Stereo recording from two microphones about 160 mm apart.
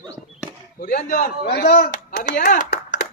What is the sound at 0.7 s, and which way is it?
Speech, 70° left (ahead or behind).